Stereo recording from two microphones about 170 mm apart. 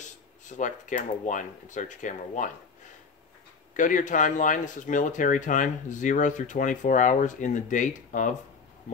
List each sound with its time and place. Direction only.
0.5 s speech: 50° left (ahead or behind)
3.7 s speech: 50° left (ahead or behind)